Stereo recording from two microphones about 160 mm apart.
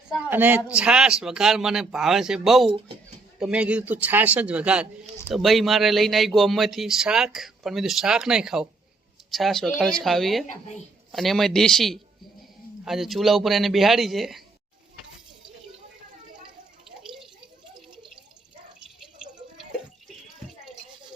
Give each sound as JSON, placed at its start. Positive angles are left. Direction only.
{"t": 0.3, "sound": "speech", "side_deg": -10}
{"t": 2.6, "sound": "speech", "side_deg": -30}
{"t": 3.4, "sound": "a man's voice", "side_deg": -5}
{"t": 10.4, "sound": "speech", "side_deg": 50}
{"t": 11.1, "sound": "speech", "side_deg": 0}